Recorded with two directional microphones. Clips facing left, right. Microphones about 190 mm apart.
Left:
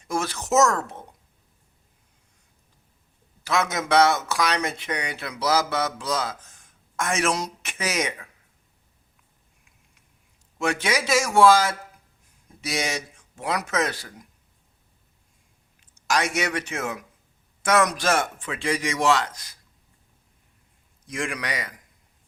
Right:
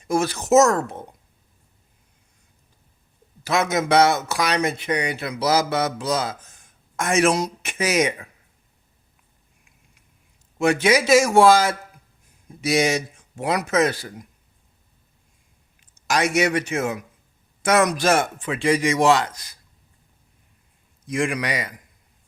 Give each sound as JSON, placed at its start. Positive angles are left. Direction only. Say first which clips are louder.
{"t": 0.1, "sound": "a man's voice", "louder": "right 6 dB", "side_deg": -10}
{"t": 0.3, "sound": "speech", "louder": "right 4 dB", "side_deg": -25}
{"t": 3.4, "sound": "a man's voice", "louder": "right 4 dB", "side_deg": -15}
{"t": 5.8, "sound": "a man's voice", "louder": "right 4 dB", "side_deg": -20}
{"t": 10.6, "sound": "a man's voice", "louder": "right 7 dB", "side_deg": -10}
{"t": 16.1, "sound": "a man's voice", "louder": "right 5 dB", "side_deg": -10}
{"t": 21.1, "sound": "a man's voice", "louder": "right 6 dB", "side_deg": -10}